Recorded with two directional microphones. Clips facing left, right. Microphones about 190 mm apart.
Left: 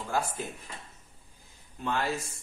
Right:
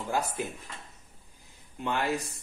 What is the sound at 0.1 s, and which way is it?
Speech, 20° right (ahead or behind).